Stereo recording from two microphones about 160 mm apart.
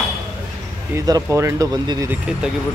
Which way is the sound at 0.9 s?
20° right (ahead or behind).